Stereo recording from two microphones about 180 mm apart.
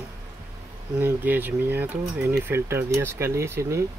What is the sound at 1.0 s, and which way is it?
Speech, 10° right (ahead or behind).